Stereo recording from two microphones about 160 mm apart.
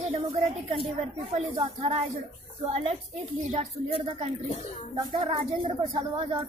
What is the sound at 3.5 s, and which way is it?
A woman's voice, 35° right (ahead or behind).